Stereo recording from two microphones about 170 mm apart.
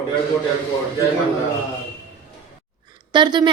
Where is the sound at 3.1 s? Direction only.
25° right (ahead or behind).